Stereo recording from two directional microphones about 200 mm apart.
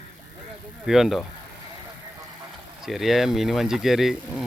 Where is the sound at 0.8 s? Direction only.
Centre (ahead or behind).